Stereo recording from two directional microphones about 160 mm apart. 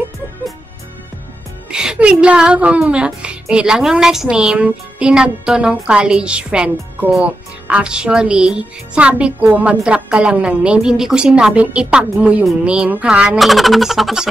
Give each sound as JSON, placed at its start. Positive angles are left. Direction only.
{"t": 1.7, "sound": "speech", "side_deg": -5}